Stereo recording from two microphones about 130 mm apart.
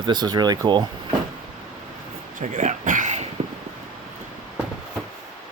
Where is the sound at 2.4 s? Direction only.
70° right (ahead or behind).